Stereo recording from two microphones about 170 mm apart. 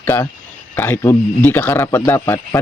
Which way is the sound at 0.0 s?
15° left (ahead or behind).